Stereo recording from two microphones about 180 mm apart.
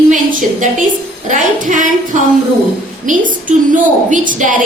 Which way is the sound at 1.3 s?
45° right (ahead or behind).